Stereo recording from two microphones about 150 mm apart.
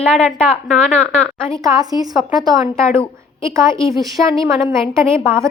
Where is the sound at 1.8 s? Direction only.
25° right (ahead or behind).